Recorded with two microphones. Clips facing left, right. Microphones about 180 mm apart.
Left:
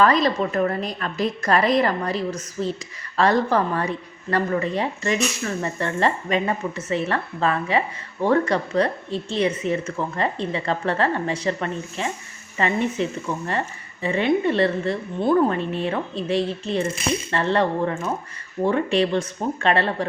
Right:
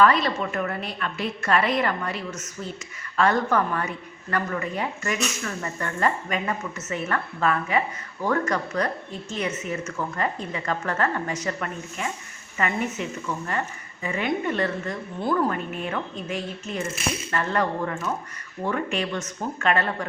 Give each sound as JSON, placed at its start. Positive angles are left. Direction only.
{"t": 0.0, "sound": "speech", "side_deg": 40}